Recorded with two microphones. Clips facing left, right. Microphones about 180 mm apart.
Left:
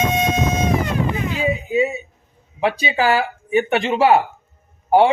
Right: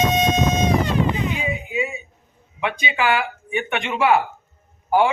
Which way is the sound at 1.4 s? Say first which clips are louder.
Left 7 dB; 35° left (ahead or behind).